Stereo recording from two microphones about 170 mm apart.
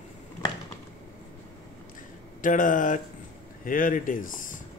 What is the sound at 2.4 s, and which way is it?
Speech, 50° left (ahead or behind).